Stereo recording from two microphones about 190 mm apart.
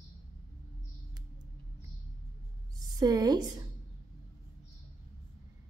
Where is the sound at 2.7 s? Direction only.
20° right (ahead or behind).